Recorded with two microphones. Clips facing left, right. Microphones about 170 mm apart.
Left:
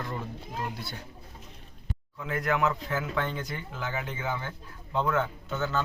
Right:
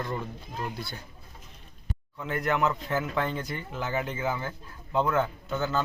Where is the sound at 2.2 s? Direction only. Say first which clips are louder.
Right 1 dB; centre (ahead or behind).